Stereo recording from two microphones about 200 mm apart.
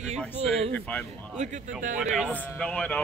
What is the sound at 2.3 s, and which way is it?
Speech, 5° left (ahead or behind).